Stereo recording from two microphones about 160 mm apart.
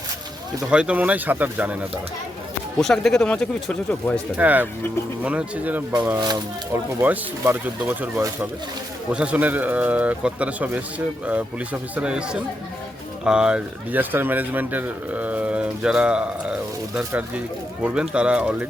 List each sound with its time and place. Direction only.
0.7 s speech: 5° right (ahead or behind)
2.7 s speech: 5° left (ahead or behind)
4.4 s speech: 10° right (ahead or behind)
6.1 s speech: 25° right (ahead or behind)
7.0 s speech: 15° right (ahead or behind)